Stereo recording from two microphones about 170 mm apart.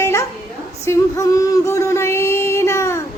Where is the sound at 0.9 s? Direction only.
20° left (ahead or behind).